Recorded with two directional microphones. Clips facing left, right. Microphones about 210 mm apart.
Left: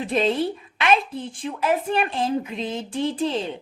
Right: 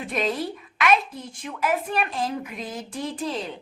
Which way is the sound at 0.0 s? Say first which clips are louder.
Left 5 dB; 30° left (ahead or behind).